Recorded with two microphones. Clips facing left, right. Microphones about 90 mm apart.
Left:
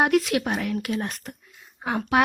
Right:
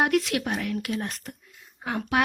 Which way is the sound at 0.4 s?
35° left (ahead or behind).